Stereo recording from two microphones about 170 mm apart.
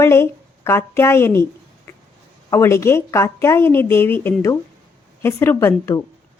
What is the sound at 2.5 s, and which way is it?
A woman's voice, 15° left (ahead or behind).